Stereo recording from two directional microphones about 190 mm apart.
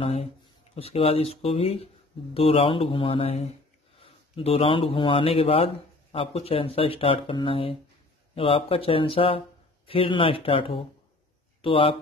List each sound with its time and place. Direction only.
0.0 s speech: 30° left (ahead or behind)